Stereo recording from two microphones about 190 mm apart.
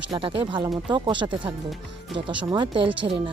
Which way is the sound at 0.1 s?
25° right (ahead or behind).